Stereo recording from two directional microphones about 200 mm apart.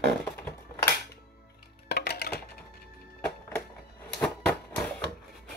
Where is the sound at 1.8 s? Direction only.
55° left (ahead or behind).